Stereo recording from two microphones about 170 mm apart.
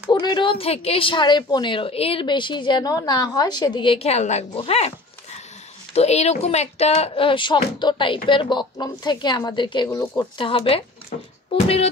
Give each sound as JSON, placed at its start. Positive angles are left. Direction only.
{"t": 0.1, "sound": "a woman's voice", "side_deg": 25}
{"t": 5.9, "sound": "a woman's voice", "side_deg": 40}